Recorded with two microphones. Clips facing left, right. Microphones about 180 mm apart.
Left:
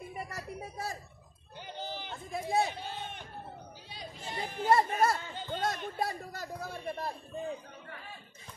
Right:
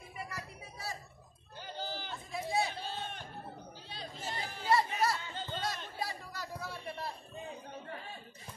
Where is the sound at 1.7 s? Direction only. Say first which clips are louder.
Left 1 dB; 20° left (ahead or behind).